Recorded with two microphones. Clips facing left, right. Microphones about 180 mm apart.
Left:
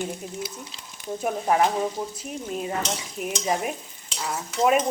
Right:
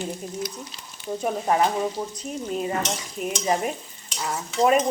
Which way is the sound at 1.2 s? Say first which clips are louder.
Even; 5° left (ahead or behind).